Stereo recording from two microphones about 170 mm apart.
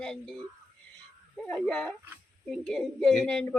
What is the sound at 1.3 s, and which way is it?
Speech, 5° left (ahead or behind).